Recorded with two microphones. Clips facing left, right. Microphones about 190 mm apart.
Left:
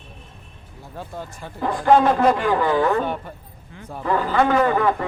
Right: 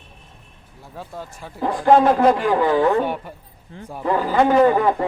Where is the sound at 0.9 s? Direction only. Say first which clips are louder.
Left 1 dB; centre (ahead or behind).